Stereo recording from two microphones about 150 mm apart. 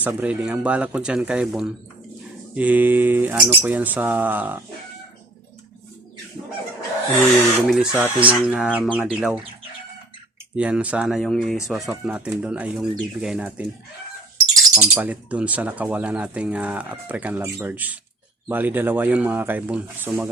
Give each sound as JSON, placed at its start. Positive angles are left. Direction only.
{"t": 0.0, "sound": "speech", "side_deg": -10}
{"t": 7.7, "sound": "speech", "side_deg": -5}
{"t": 10.6, "sound": "speech", "side_deg": -10}